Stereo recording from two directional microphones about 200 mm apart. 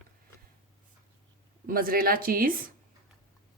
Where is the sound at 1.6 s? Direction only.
45° right (ahead or behind).